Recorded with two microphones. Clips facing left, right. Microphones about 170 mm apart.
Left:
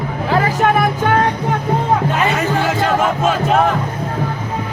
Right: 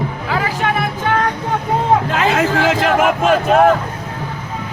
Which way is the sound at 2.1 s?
90° right.